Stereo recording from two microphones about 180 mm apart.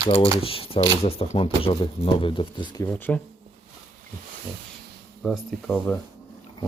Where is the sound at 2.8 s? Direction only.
10° left (ahead or behind).